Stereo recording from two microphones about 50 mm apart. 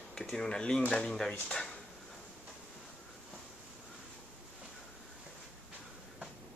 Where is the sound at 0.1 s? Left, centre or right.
Centre.